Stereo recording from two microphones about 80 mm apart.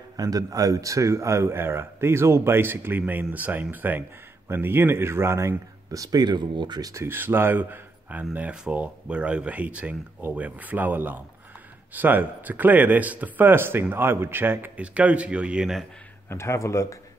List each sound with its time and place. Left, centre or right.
0.2 s speech: right
5.9 s speech: right
6.8 s speech: right
7.1 s speech: right
14.8 s speech: centre
16.3 s speech: left